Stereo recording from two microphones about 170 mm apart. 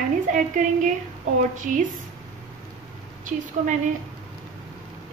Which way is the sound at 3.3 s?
50° right (ahead or behind).